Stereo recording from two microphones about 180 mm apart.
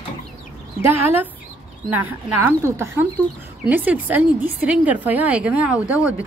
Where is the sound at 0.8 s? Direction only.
10° right (ahead or behind).